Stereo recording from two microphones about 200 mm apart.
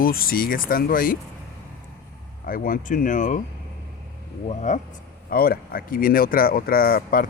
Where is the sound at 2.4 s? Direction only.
45° left (ahead or behind).